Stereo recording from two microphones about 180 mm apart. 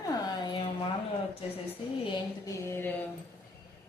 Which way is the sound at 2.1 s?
15° left (ahead or behind).